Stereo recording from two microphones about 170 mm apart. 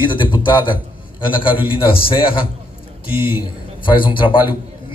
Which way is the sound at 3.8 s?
30° left (ahead or behind).